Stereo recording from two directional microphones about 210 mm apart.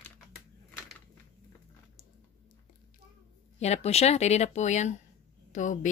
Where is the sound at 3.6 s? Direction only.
30° left (ahead or behind).